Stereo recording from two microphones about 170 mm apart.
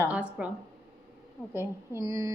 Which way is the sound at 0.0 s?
10° right (ahead or behind).